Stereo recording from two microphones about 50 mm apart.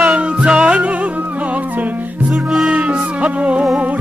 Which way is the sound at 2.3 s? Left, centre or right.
Centre.